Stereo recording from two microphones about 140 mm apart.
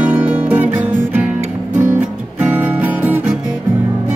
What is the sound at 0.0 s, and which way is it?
Music, 10° right (ahead or behind).